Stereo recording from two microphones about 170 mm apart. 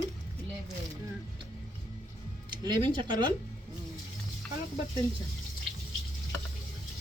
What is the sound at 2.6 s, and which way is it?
Speech, 25° right (ahead or behind).